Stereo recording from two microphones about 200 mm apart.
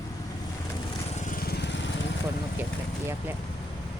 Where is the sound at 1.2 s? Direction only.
45° left (ahead or behind); by 1.9 s 60° left (ahead or behind).